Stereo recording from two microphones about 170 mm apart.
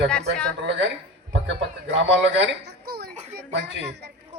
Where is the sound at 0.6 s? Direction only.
90° right.